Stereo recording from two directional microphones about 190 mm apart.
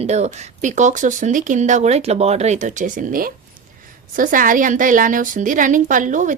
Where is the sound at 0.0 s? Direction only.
35° right (ahead or behind).